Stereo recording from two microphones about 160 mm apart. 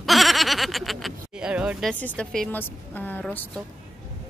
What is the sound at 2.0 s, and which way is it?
A woman's voice, 10° left (ahead or behind).